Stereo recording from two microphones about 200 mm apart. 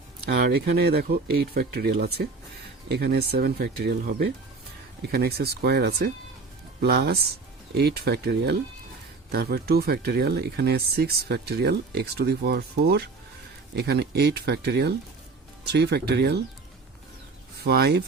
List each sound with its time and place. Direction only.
0.3 s speech: 50° right (ahead or behind)
17.6 s speech: 55° right (ahead or behind)